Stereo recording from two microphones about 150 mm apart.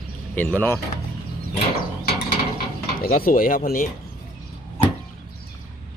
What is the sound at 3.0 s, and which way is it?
Speech, 75° left (ahead or behind).